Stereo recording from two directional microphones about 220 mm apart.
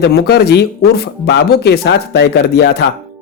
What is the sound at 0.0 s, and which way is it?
Speech, 50° left (ahead or behind).